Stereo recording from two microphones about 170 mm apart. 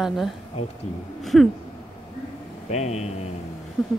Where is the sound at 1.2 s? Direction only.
Centre (ahead or behind).